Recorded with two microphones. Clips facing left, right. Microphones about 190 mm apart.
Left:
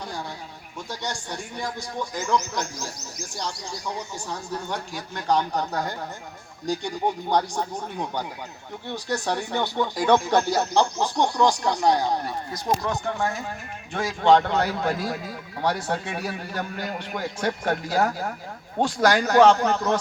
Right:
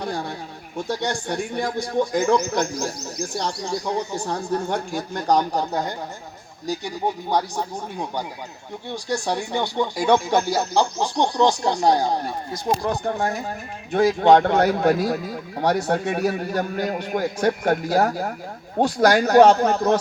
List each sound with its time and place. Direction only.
0.0 s a sound: 60° right (ahead or behind)
0.9 s a man's voice: 55° right (ahead or behind); by 5.8 s 35° right (ahead or behind)
6.7 s a man's voice: 5° right (ahead or behind); by 20.0 s 40° right (ahead or behind)